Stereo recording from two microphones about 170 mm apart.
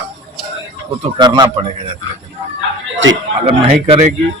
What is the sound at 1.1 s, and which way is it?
Speech, 25° right (ahead or behind).